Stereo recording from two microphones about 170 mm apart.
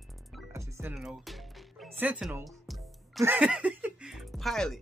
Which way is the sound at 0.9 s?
Centre (ahead or behind).